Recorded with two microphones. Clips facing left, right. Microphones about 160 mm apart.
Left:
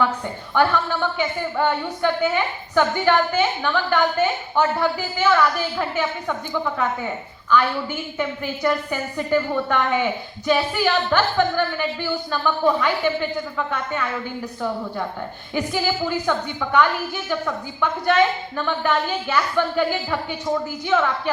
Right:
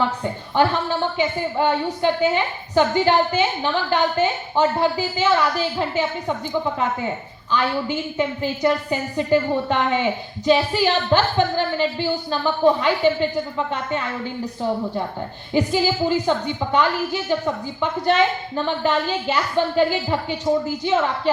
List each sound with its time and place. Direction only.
0.5 s a woman's voice: 20° right (ahead or behind)
15.5 s a woman's voice: 20° right (ahead or behind)